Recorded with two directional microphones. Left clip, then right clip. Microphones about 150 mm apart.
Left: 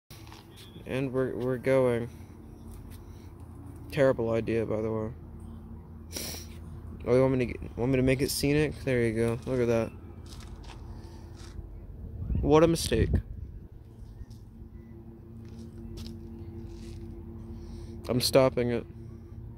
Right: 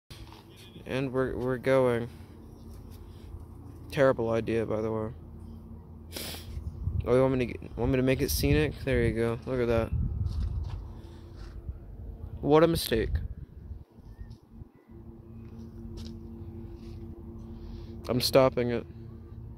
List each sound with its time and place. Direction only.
0.8 s speech: centre (ahead or behind)
3.9 s speech: centre (ahead or behind)
6.1 s cat: 5° left (ahead or behind)
7.0 s speech: 5° left (ahead or behind)
12.4 s speech: 5° left (ahead or behind)
17.7 s speech: centre (ahead or behind)